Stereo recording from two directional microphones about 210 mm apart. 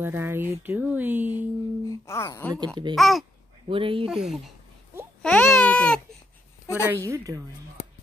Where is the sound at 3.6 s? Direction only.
25° right (ahead or behind).